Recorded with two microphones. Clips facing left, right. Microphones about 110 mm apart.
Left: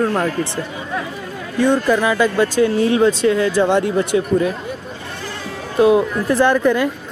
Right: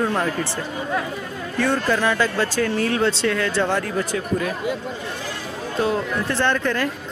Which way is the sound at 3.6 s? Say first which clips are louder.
Left 6 dB; 20° left (ahead or behind).